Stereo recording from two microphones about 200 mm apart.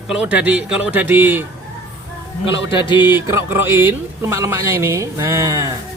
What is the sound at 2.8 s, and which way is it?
Music, 25° left (ahead or behind).